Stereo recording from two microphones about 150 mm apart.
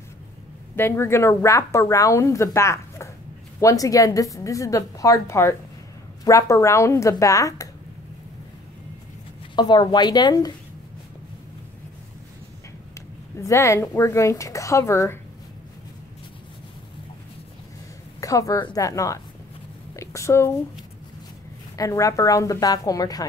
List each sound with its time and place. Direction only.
0.7 s speech: 15° left (ahead or behind)
9.6 s speech: 30° left (ahead or behind)
12.9 s speech: 20° left (ahead or behind)
18.2 s speech: 20° left (ahead or behind)
21.7 s speech: 20° left (ahead or behind)